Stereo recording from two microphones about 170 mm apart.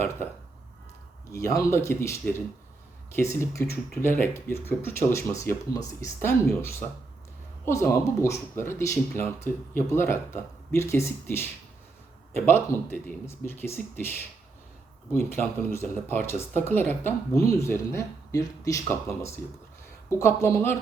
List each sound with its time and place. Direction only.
1.3 s speech: 15° left (ahead or behind)
12.5 s speech: 10° left (ahead or behind)
20.1 s speech: 15° left (ahead or behind)